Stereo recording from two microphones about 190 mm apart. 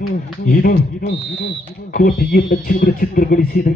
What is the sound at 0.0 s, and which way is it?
Speech, 50° left (ahead or behind).